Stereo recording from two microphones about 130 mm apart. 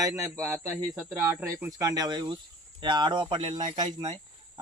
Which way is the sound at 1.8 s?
30° right (ahead or behind).